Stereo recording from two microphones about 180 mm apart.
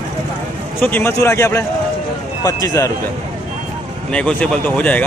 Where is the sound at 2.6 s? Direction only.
20° left (ahead or behind).